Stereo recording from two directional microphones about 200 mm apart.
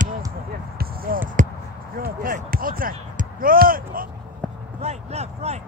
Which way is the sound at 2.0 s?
45° right (ahead or behind).